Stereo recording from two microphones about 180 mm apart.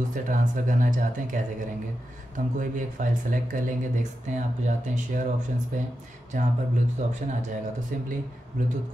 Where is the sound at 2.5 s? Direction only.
50° right (ahead or behind).